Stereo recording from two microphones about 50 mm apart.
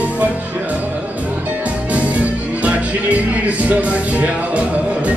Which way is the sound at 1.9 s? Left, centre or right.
Right.